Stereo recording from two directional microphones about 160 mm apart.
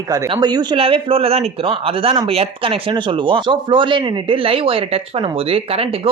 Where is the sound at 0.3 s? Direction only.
25° right (ahead or behind).